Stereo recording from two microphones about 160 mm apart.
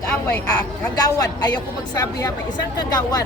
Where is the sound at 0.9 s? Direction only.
25° left (ahead or behind).